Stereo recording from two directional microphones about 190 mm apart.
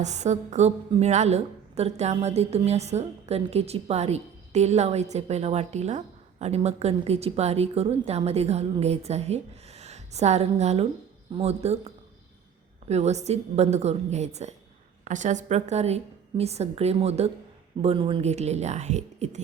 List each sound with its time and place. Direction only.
0.0 s a woman's voice: 35° right (ahead or behind)
12.9 s a woman's voice: 35° right (ahead or behind)